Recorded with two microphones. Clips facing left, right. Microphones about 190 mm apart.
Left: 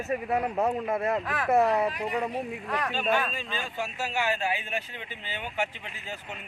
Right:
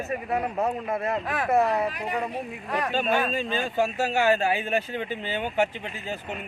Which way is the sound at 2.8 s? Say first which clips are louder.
Right 3 dB; 45° right (ahead or behind).